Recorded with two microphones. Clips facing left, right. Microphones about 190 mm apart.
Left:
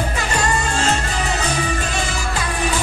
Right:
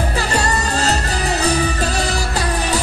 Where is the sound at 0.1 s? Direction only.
35° right (ahead or behind).